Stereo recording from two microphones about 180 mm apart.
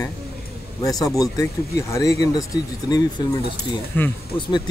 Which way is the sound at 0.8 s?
20° left (ahead or behind).